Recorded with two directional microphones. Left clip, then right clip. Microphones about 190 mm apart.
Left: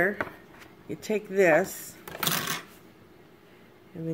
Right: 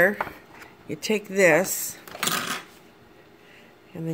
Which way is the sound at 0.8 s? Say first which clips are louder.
Right 4 dB; 45° right (ahead or behind).